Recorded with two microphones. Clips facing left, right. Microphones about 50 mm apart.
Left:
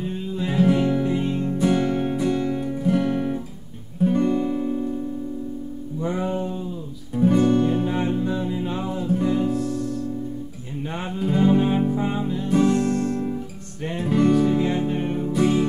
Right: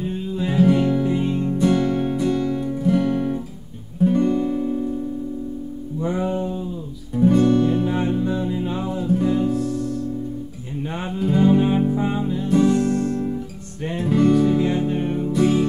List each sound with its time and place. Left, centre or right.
0.4 s music: centre
1.6 s music: centre
5.9 s music: centre
10.9 s music: centre